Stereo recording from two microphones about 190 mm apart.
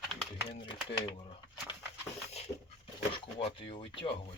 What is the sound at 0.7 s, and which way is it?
Speech, 25° left (ahead or behind).